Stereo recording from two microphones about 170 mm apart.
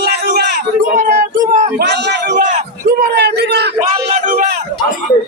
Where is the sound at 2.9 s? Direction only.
75° right (ahead or behind).